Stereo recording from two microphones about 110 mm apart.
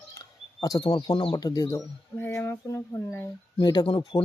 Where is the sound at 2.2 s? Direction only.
20° left (ahead or behind).